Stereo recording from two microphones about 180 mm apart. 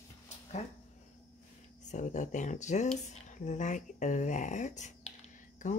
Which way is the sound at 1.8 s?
40° left (ahead or behind).